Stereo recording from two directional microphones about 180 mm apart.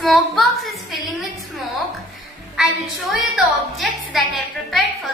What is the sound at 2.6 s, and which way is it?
A woman's voice, centre (ahead or behind).